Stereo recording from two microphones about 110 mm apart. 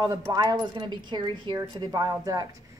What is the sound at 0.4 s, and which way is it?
A woman's voice, 40° right (ahead or behind).